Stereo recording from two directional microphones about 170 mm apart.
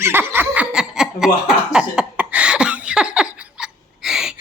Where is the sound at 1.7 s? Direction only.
5° right (ahead or behind).